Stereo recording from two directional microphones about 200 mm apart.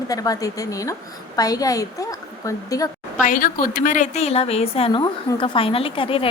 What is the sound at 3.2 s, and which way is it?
A woman's voice, 45° left (ahead or behind).